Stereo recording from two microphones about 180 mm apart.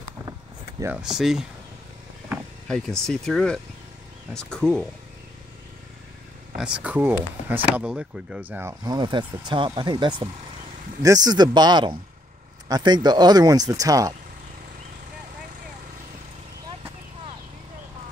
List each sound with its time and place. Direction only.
1.0 s speech: centre (ahead or behind)
2.7 s speech: 5° left (ahead or behind)
6.6 s speech: 5° right (ahead or behind)